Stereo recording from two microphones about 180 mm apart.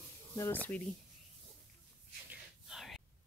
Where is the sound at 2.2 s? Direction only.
Centre (ahead or behind).